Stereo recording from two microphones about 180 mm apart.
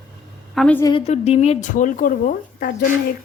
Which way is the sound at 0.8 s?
25° left (ahead or behind).